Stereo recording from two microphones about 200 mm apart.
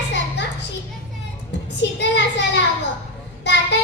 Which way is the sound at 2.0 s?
60° left (ahead or behind).